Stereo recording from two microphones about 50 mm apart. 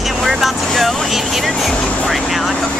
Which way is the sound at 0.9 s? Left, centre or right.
Centre.